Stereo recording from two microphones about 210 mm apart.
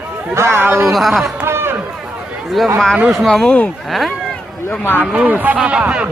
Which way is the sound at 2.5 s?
Centre (ahead or behind).